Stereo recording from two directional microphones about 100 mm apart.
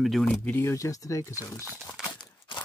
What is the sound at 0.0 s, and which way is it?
Speech, centre (ahead or behind).